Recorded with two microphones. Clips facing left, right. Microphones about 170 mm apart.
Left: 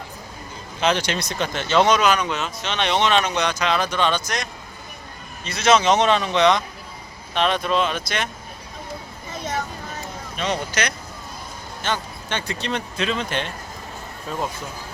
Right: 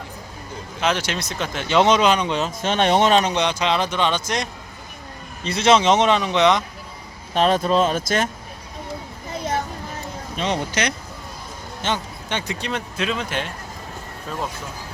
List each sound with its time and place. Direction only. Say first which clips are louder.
0.8 s speech: left 1 dB; 5° right (ahead or behind)
1.6 s speech: right 1 dB; 15° right (ahead or behind)
1.9 s speech: right 2 dB; 25° right (ahead or behind)
2.6 s speech: right 5 dB; 45° right (ahead or behind); by 6.6 s 20° right (ahead or behind)
7.3 s speech: right 3 dB; 40° right (ahead or behind)
10.3 s speech: right 1 dB; 25° right (ahead or behind); by 13.5 s 5° right (ahead or behind)